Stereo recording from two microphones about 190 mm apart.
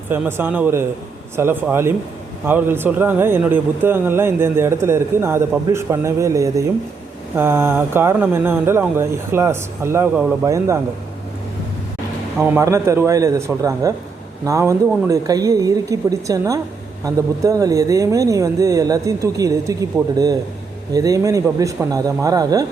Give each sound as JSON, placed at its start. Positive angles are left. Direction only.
{"t": 0.1, "sound": "speech", "side_deg": -10}
{"t": 12.4, "sound": "a man's voice", "side_deg": -10}